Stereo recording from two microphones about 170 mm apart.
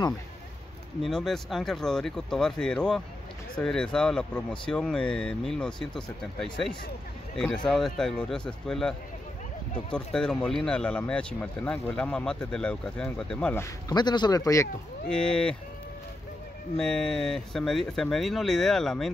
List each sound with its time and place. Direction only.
1.0 s speech: centre (ahead or behind)
13.8 s speech: 25° left (ahead or behind)
15.0 s speech: 5° left (ahead or behind)
16.7 s speech: centre (ahead or behind)